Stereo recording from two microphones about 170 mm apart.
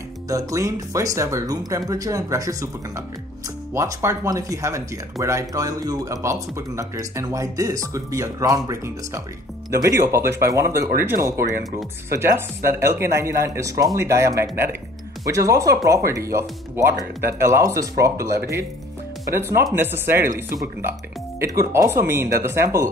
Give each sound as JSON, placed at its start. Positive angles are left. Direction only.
{"t": 0.3, "sound": "speech", "side_deg": -20}
{"t": 12.1, "sound": "speech", "side_deg": -15}
{"t": 21.4, "sound": "speech", "side_deg": -20}